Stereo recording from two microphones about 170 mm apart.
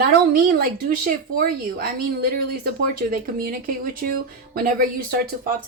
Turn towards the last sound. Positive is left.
turn(degrees=-60)  # may be behind; listen again after turning